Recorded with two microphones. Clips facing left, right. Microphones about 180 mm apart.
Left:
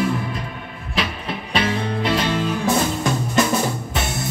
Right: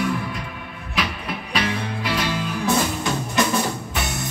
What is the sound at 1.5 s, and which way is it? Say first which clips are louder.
Music: left 4 dB; 25° left (ahead or behind).